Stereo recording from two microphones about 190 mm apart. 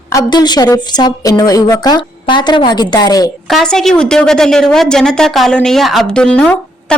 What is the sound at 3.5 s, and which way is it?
A woman's voice, centre (ahead or behind).